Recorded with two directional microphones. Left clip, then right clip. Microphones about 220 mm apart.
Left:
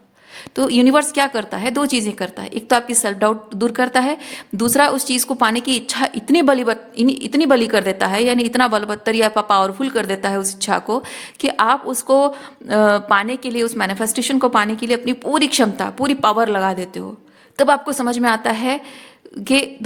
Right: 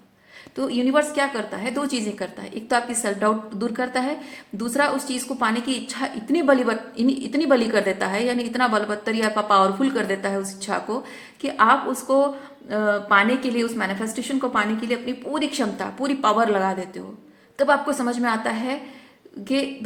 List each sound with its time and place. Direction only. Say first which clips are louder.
0.5 s a woman's voice: left 6 dB; 50° left (ahead or behind)